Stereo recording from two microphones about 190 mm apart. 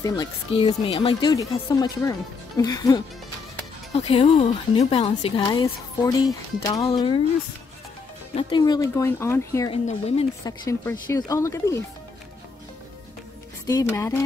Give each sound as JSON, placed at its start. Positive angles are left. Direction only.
{"t": 0.0, "sound": "a woman's voice", "side_deg": 20}
{"t": 3.9, "sound": "a woman's voice", "side_deg": 30}
{"t": 8.4, "sound": "speech", "side_deg": 25}
{"t": 9.7, "sound": "speech", "side_deg": 30}
{"t": 10.4, "sound": "speech", "side_deg": 15}
{"t": 13.7, "sound": "speech", "side_deg": 15}